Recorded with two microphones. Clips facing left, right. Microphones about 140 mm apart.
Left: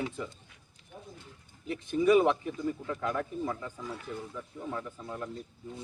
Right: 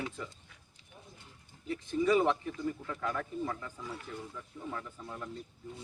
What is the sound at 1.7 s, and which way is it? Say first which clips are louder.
Speech: left 4 dB; 15° left (ahead or behind).